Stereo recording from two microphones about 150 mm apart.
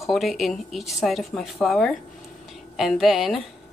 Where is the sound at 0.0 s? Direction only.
Centre (ahead or behind).